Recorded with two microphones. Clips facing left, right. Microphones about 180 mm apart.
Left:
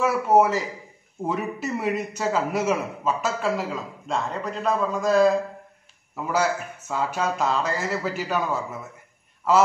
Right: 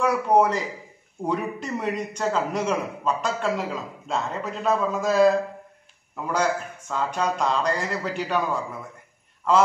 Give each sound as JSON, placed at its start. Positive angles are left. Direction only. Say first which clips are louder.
{"t": 0.0, "sound": "a man's voice", "louder": "left 1 dB", "side_deg": 5}